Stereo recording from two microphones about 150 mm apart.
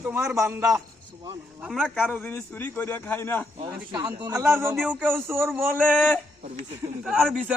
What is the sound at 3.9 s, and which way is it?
A man's voice, 20° right (ahead or behind).